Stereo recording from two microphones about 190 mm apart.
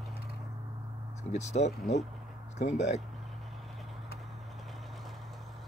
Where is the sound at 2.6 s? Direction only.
60° left (ahead or behind).